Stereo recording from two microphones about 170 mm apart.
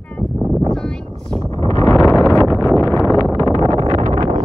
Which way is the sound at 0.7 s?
5° left (ahead or behind).